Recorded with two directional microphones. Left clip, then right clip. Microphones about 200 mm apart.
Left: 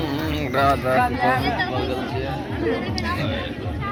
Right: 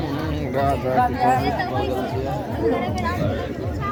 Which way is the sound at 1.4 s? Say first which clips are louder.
Even; 20° right (ahead or behind).